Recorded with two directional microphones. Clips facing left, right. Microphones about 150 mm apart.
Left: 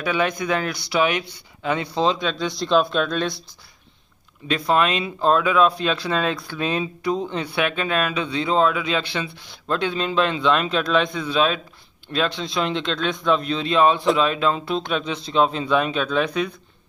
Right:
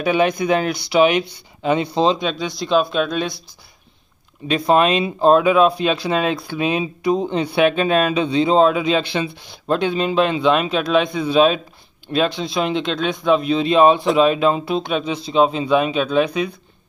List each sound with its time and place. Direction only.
0.0 s speech: 20° right (ahead or behind)
2.3 s speech: 5° right (ahead or behind)
4.5 s speech: 20° right (ahead or behind)